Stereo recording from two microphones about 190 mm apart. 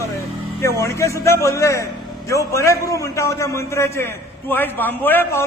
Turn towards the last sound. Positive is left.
turn(degrees=10)  # may be behind; listen again after turning